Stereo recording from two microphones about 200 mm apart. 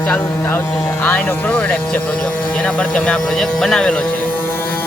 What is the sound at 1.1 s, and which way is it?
Speech, 5° left (ahead or behind).